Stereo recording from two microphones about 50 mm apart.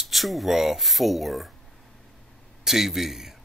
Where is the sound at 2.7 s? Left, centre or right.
Centre.